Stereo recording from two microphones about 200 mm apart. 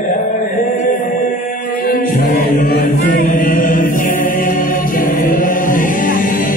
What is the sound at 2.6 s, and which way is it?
Chant, 50° left (ahead or behind).